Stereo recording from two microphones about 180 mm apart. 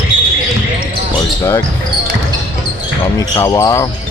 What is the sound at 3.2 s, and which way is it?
Speech, 15° left (ahead or behind).